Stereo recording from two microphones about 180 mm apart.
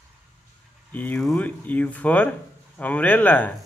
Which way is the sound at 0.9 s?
10° left (ahead or behind).